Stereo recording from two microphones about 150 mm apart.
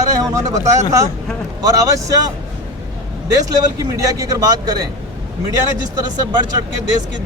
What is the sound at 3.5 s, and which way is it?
Speech, 25° right (ahead or behind).